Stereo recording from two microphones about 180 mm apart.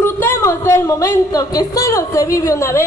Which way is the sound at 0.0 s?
15° left (ahead or behind).